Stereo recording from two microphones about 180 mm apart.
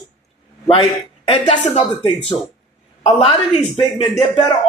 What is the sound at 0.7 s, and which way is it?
A man's voice, 30° left (ahead or behind).